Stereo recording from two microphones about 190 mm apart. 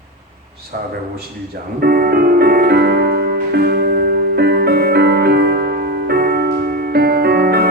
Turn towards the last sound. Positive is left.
turn(degrees=-55)  # may be behind; listen again after turning